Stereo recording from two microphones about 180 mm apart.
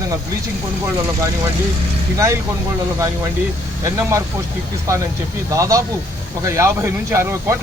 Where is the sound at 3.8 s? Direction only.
15° right (ahead or behind).